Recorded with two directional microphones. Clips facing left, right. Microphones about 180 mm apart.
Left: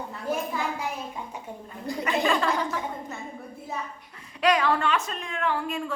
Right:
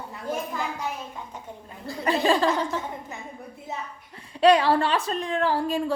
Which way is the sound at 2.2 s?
30° right (ahead or behind).